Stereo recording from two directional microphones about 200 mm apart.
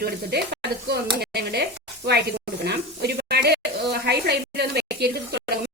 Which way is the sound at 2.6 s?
55° right (ahead or behind).